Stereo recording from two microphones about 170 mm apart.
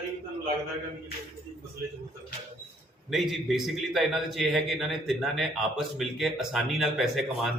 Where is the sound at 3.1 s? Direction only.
Centre (ahead or behind).